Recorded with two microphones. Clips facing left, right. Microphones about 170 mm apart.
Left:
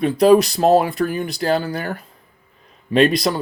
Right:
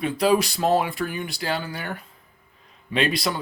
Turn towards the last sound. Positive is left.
turn(degrees=40)  # may be behind; listen again after turning